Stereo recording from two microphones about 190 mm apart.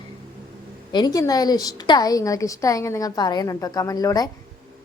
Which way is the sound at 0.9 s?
20° left (ahead or behind).